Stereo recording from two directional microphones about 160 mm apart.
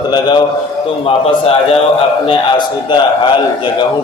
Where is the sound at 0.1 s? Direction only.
25° left (ahead or behind).